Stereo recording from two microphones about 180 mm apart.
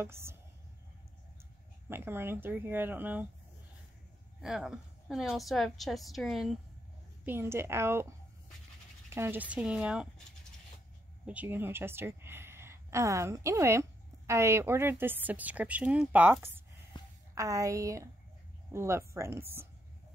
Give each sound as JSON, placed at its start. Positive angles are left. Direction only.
{"t": 0.0, "sound": "speech", "side_deg": -15}
{"t": 1.9, "sound": "speech", "side_deg": -10}
{"t": 4.4, "sound": "a woman's voice", "side_deg": -5}
{"t": 7.2, "sound": "speech", "side_deg": -15}
{"t": 9.1, "sound": "speech", "side_deg": -10}
{"t": 11.2, "sound": "a woman's voice", "side_deg": -10}
{"t": 17.0, "sound": "a sound", "side_deg": 25}
{"t": 17.4, "sound": "speech", "side_deg": -15}